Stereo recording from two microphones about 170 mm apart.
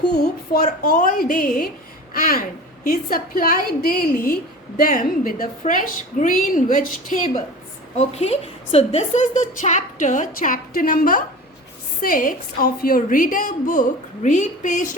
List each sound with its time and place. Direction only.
0.6 s a woman's voice: 50° left (ahead or behind)
7.9 s a woman's voice: 40° left (ahead or behind)